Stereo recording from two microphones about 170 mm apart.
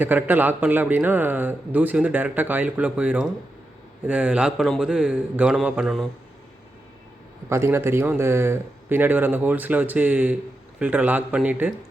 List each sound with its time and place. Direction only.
0.0 s a man's voice: 10° right (ahead or behind)
7.5 s a man's voice: 15° right (ahead or behind)